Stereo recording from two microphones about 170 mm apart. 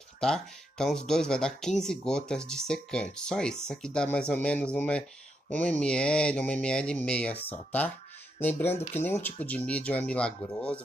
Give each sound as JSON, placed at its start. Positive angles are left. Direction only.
{"t": 0.2, "sound": "speech", "side_deg": 5}